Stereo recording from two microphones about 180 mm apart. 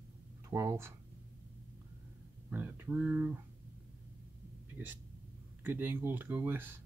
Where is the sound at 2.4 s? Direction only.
10° right (ahead or behind).